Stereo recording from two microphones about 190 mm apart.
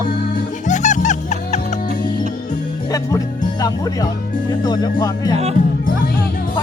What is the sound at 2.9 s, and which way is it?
Music, 20° left (ahead or behind).